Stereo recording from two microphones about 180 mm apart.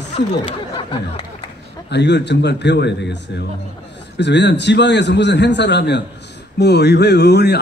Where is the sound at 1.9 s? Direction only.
70° left (ahead or behind).